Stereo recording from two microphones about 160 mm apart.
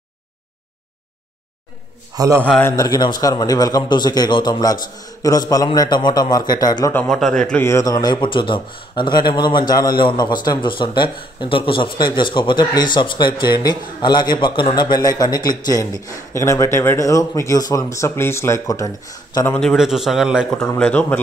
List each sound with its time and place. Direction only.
2.1 s a man's voice: 20° right (ahead or behind)
2.7 s speech: 25° left (ahead or behind)
6.9 s a man's voice: 5° left (ahead or behind)
7.6 s speech: 20° left (ahead or behind)
19.5 s a man's voice: 5° left (ahead or behind)
20.6 s speech: 10° left (ahead or behind)